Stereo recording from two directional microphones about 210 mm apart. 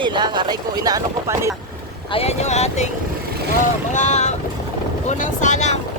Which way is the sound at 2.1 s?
30° left (ahead or behind).